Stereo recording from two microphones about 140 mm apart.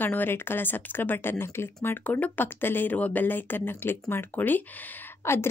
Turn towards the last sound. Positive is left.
turn(degrees=20)  # may be behind; listen again after turning